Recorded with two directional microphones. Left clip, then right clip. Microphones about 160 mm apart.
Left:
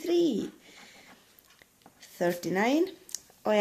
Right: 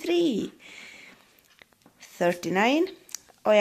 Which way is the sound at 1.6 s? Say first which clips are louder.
Right 4 dB; 20° right (ahead or behind).